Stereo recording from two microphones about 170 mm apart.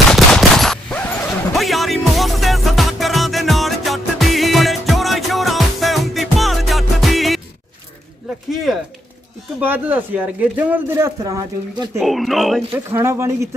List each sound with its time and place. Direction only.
0.1 s gunshot: centre (ahead or behind)
9.6 s a man's voice: 10° right (ahead or behind)
12.0 s speech: centre (ahead or behind)
12.7 s a man's voice: 15° right (ahead or behind)